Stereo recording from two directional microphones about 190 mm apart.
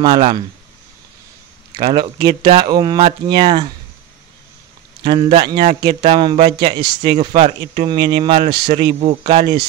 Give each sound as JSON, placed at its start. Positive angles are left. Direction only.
{"t": 0.0, "sound": "speech", "side_deg": -25}
{"t": 1.7, "sound": "speech", "side_deg": -25}
{"t": 5.0, "sound": "speech", "side_deg": -25}
{"t": 6.8, "sound": "speech", "side_deg": -55}
{"t": 7.2, "sound": "speech", "side_deg": -35}